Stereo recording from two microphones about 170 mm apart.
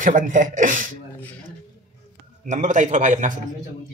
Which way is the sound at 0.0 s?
50° right (ahead or behind).